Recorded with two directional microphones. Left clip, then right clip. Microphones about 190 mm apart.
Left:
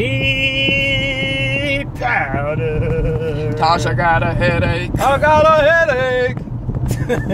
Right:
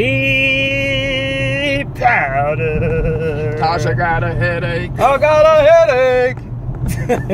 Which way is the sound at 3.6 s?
30° left (ahead or behind).